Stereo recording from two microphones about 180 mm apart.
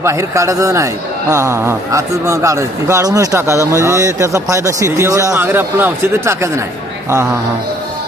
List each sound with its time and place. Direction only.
0.0 s a man's voice: 15° right (ahead or behind)